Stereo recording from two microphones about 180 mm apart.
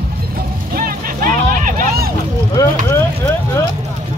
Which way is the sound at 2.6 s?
20° left (ahead or behind).